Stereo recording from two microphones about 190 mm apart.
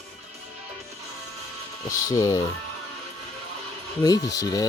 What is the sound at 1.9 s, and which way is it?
Speech, 15° left (ahead or behind).